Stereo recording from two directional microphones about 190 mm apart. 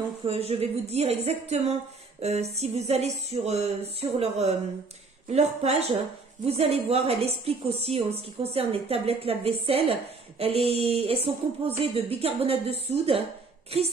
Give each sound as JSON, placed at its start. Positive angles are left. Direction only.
{"t": 0.3, "sound": "a woman's voice", "side_deg": -30}